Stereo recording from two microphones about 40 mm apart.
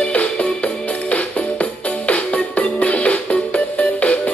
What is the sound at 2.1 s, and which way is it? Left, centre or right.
Music, left.